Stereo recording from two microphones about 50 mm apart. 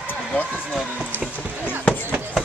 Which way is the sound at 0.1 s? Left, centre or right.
Left.